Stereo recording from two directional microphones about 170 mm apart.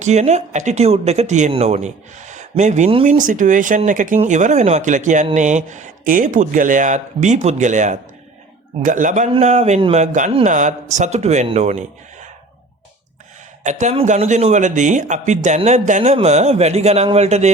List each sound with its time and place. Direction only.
0.0 s speech: 40° right (ahead or behind)
3.2 s speech: 50° right (ahead or behind)
13.7 s speech: 45° right (ahead or behind)